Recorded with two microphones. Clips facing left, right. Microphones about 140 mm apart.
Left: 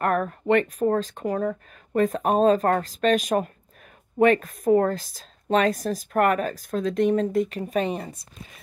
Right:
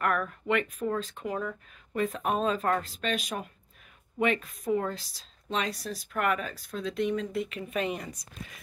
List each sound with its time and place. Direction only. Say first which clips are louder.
0.0 s speech: left 6 dB; 40° left (ahead or behind)